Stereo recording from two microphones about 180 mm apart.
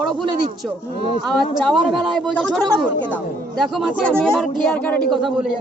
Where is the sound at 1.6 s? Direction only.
Centre (ahead or behind).